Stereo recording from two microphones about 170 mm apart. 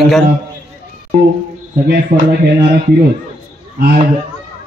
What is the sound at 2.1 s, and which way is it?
Speech, 60° right (ahead or behind).